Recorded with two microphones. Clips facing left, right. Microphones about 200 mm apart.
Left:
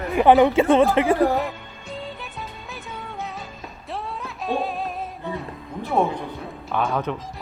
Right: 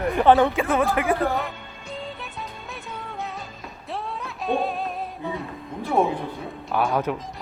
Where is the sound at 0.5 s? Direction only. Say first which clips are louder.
Left 6 dB; 25° left (ahead or behind).